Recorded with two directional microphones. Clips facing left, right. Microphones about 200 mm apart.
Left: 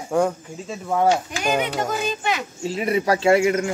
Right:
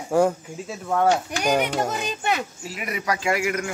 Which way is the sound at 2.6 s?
30° left (ahead or behind).